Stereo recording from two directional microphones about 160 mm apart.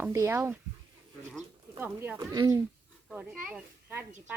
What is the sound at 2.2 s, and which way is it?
Speech, 20° right (ahead or behind).